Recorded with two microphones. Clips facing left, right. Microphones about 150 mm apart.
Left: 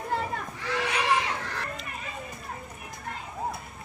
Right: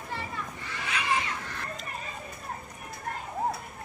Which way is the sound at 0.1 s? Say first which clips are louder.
Left 5 dB; 65° left (ahead or behind).